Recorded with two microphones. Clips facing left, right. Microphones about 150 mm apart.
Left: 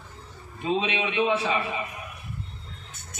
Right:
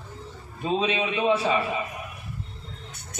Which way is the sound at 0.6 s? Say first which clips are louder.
Right 1 dB; 35° right (ahead or behind).